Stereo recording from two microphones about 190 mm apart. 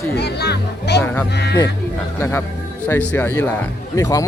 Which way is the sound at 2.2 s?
15° left (ahead or behind).